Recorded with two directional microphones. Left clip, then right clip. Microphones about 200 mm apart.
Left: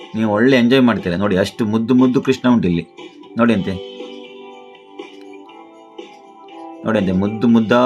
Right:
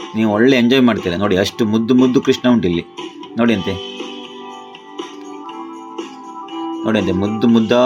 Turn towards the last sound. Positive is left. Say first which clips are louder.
# right 1 dB
turn(degrees=-5)  # may be behind; listen again after turning